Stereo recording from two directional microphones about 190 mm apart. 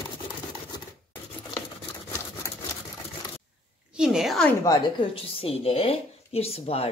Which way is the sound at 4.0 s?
Centre (ahead or behind).